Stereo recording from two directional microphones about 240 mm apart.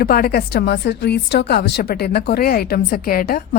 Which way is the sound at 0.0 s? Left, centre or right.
Left.